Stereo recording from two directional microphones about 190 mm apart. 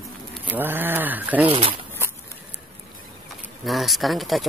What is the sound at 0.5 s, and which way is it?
Speech, 10° right (ahead or behind).